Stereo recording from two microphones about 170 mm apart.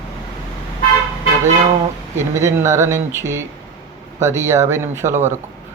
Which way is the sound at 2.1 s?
15° right (ahead or behind).